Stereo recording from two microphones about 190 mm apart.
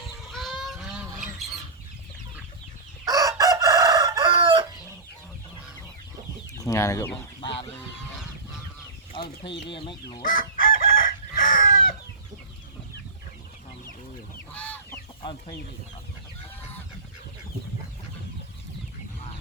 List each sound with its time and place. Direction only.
0.3 s goose: centre (ahead or behind)
3.1 s chicken: 20° right (ahead or behind)
6.6 s speech: 15° left (ahead or behind)
9.1 s speech: 25° left (ahead or behind)
10.2 s chicken: 50° left (ahead or behind)
14.5 s chicken: 5° left (ahead or behind)